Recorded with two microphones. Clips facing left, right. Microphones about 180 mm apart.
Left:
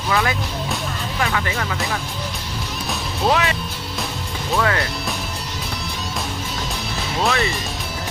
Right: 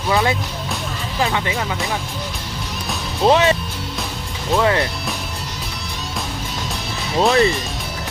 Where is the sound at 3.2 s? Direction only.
30° right (ahead or behind).